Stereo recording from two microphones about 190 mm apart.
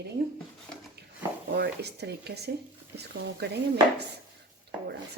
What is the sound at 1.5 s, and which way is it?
A woman's voice, 60° right (ahead or behind).